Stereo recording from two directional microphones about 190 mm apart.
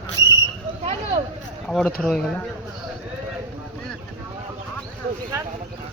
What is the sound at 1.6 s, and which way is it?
Speech, centre (ahead or behind).